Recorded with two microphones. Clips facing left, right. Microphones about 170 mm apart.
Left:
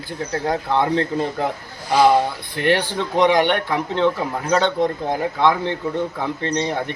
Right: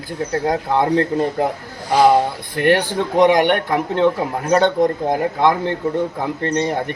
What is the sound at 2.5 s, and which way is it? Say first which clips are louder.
A man's voice: right 4 dB; 50° right (ahead or behind).